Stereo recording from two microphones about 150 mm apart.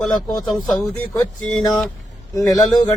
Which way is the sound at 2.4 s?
20° left (ahead or behind).